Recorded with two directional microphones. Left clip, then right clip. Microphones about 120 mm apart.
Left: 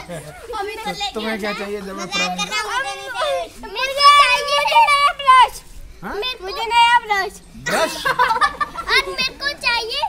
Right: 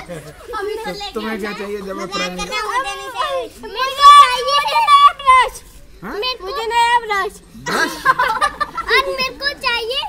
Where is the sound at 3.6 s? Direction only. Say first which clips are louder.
Right 2 dB; 25° left (ahead or behind).